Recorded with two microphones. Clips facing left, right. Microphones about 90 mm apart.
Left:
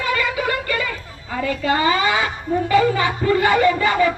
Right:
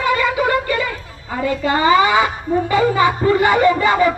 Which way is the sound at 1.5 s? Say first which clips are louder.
Right 4 dB; 25° right (ahead or behind).